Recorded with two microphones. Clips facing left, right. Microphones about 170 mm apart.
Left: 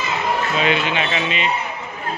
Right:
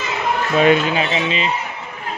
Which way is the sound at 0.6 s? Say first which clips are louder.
Right 9 dB; 45° right (ahead or behind).